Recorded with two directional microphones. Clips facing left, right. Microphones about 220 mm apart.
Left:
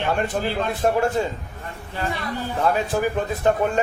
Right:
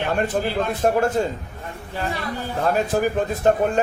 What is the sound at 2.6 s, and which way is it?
A man's voice, 40° right (ahead or behind).